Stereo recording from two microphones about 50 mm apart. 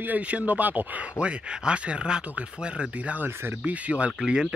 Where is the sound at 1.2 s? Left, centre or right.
Right.